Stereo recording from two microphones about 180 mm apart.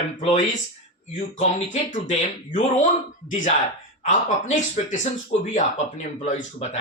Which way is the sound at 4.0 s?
40° left (ahead or behind).